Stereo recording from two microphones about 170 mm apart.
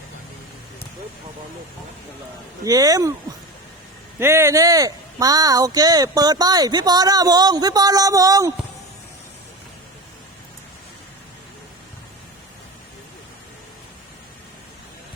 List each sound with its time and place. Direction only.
2.6 s speech: 20° right (ahead or behind)
4.2 s speech: 15° right (ahead or behind)